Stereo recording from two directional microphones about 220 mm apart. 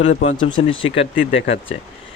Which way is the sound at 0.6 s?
60° left (ahead or behind).